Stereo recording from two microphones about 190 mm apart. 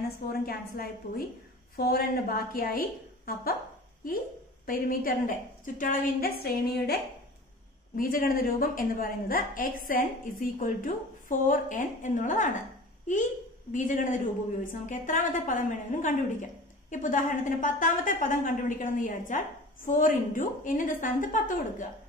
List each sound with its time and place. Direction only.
0.3 s a woman's voice: 50° left (ahead or behind)
4.6 s a woman's voice: 50° left (ahead or behind)
13.7 s a woman's voice: 40° left (ahead or behind)